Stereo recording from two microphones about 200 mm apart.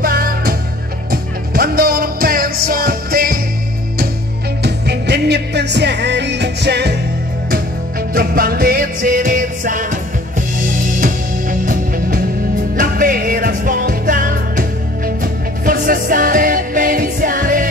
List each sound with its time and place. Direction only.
0.0 s music: 50° right (ahead or behind)
4.6 s music: 55° right (ahead or behind)
8.1 s music: 50° right (ahead or behind)
11.0 s music: 45° right (ahead or behind)